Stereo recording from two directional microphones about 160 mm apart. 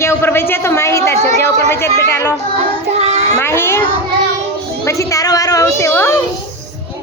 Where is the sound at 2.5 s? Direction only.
40° right (ahead or behind).